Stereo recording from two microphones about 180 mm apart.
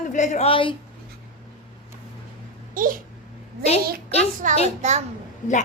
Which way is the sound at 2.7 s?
50° right (ahead or behind).